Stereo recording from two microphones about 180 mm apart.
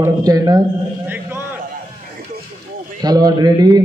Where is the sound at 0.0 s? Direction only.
20° right (ahead or behind).